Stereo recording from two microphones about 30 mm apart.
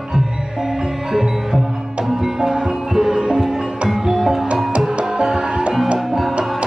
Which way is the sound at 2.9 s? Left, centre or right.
Centre.